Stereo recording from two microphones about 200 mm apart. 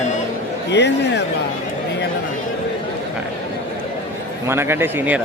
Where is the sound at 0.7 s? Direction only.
60° left (ahead or behind).